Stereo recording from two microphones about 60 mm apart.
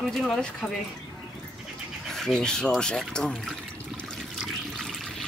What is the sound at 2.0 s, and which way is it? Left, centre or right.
Speech, centre.